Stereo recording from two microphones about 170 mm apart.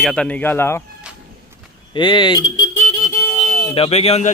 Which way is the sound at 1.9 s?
30° left (ahead or behind).